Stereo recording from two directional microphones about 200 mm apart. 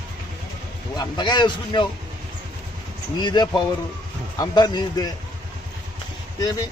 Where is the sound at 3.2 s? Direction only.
20° left (ahead or behind).